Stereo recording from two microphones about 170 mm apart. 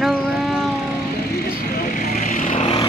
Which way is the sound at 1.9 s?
55° left (ahead or behind).